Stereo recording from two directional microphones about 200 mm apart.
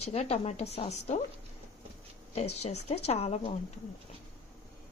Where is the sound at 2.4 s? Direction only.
30° left (ahead or behind).